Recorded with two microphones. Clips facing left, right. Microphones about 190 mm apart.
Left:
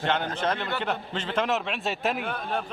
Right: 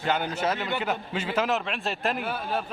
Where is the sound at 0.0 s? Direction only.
5° right (ahead or behind).